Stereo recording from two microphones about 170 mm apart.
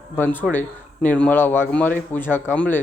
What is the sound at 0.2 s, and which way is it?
Speech, 10° left (ahead or behind).